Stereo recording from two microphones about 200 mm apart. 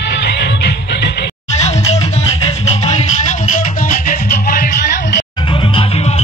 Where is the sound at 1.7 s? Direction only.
35° left (ahead or behind).